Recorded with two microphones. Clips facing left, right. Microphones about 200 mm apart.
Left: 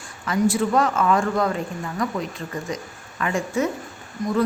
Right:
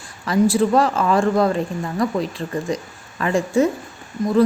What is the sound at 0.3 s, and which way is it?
A woman's voice, 35° right (ahead or behind).